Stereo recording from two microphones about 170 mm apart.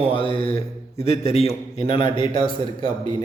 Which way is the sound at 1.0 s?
40° left (ahead or behind).